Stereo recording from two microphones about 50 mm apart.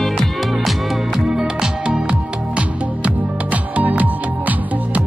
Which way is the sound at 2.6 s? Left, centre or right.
Right.